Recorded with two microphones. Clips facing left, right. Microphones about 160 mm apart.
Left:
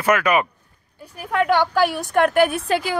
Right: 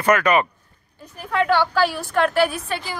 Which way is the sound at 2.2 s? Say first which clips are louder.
Left 2 dB; 50° left (ahead or behind).